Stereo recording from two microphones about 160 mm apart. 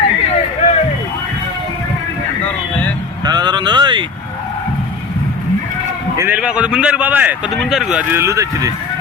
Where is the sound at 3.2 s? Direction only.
25° right (ahead or behind).